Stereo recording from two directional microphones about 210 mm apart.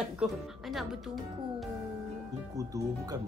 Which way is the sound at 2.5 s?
15° right (ahead or behind).